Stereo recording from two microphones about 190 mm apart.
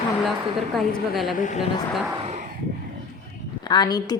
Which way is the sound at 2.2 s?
35° right (ahead or behind).